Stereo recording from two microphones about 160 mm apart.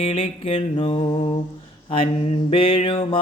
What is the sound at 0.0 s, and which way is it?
Mantra, 40° left (ahead or behind).